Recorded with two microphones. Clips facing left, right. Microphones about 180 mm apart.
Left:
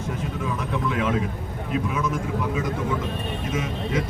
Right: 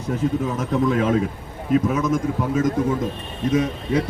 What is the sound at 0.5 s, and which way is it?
A man's voice, 40° right (ahead or behind).